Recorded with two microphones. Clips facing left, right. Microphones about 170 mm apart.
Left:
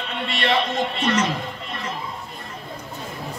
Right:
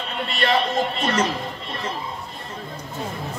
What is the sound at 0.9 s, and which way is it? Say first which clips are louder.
Speech: left 1 dB; 35° right (ahead or behind).